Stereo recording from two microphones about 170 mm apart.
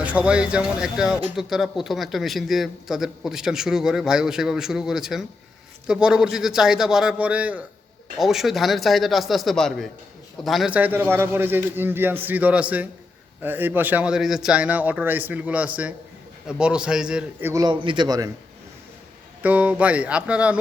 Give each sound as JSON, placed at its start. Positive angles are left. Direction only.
{"t": 0.0, "sound": "a man's voice", "side_deg": -10}
{"t": 17.5, "sound": "a man's voice", "side_deg": -20}
{"t": 19.4, "sound": "a man's voice", "side_deg": -10}